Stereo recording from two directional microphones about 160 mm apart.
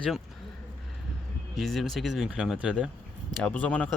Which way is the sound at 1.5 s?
Centre (ahead or behind).